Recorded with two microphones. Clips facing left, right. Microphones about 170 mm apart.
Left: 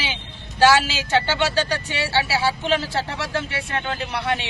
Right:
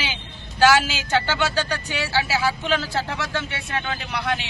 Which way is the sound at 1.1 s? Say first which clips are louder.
Left 2 dB; 25° left (ahead or behind).